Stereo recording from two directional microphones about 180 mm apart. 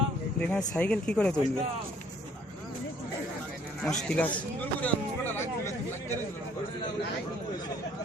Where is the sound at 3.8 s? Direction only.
5° left (ahead or behind).